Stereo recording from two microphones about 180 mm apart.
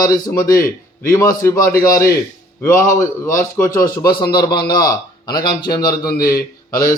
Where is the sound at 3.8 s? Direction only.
25° left (ahead or behind).